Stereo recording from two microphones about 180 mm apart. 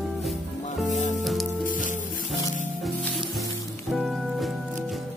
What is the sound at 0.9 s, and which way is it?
Music, 45° left (ahead or behind).